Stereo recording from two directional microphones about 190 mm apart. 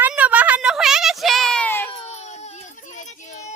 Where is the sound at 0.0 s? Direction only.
5° right (ahead or behind); by 1.9 s 10° left (ahead or behind).